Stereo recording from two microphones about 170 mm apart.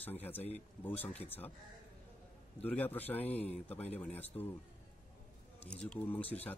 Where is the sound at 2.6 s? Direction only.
10° left (ahead or behind).